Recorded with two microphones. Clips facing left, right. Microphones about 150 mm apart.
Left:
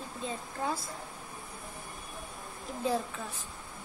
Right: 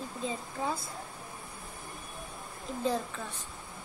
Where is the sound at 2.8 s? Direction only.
5° left (ahead or behind).